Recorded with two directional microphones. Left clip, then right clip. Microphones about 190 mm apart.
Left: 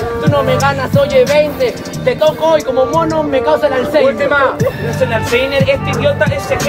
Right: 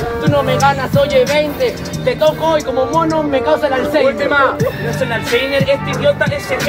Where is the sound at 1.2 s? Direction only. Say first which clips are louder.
Left 3 dB; 10° right (ahead or behind).